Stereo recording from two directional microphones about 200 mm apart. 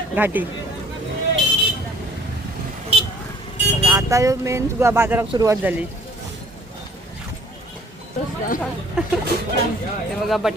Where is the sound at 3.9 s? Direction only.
15° right (ahead or behind).